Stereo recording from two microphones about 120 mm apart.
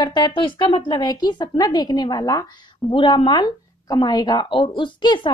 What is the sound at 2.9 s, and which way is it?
Speech, 45° left (ahead or behind).